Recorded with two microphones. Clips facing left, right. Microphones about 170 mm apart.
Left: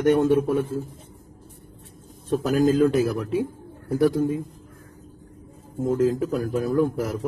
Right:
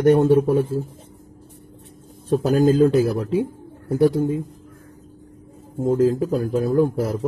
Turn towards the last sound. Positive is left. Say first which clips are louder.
# right 3 dB
turn(degrees=-30)  # may be behind; listen again after turning